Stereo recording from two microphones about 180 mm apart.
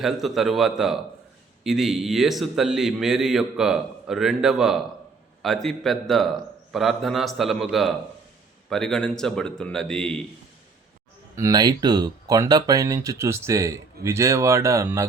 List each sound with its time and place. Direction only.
0.0 s a man's voice: centre (ahead or behind)
11.3 s speech: 20° right (ahead or behind)